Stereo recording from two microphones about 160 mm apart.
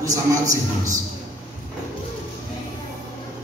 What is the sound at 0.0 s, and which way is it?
Speech, 20° right (ahead or behind).